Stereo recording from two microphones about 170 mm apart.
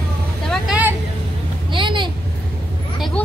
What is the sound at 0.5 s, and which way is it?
Speech, 5° right (ahead or behind).